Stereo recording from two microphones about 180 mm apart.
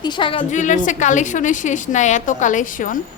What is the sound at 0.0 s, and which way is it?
Speech, 25° left (ahead or behind).